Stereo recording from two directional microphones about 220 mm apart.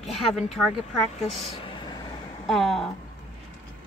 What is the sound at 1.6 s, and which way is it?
Vehicle, 20° left (ahead or behind).